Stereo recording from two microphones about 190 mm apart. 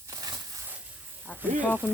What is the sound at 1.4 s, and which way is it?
Speech, 10° right (ahead or behind).